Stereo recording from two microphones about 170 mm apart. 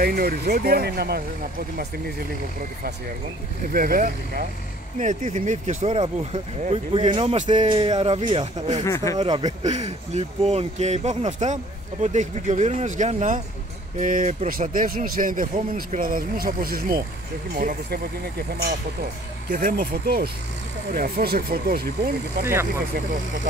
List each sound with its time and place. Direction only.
0.0 s speech: 60° right (ahead or behind)
3.7 s speech: 55° right (ahead or behind); by 7.6 s 40° right (ahead or behind)
7.6 s speech: 30° right (ahead or behind)
8.8 s speech: 20° left (ahead or behind)
9.6 s speech: 40° right (ahead or behind); by 18.0 s 60° right (ahead or behind)
19.5 s speech: 60° right (ahead or behind)
22.4 s speech: 15° right (ahead or behind)